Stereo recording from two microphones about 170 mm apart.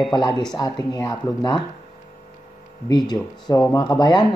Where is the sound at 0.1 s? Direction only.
25° left (ahead or behind).